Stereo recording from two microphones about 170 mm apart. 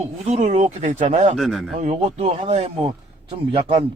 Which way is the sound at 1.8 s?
45° right (ahead or behind).